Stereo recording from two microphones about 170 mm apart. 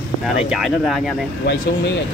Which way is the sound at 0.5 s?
Centre (ahead or behind).